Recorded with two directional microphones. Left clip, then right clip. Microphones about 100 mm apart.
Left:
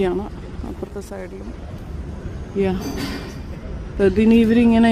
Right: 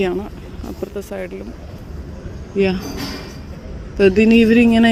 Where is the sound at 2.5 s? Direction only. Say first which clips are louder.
Right 4 dB; 15° right (ahead or behind).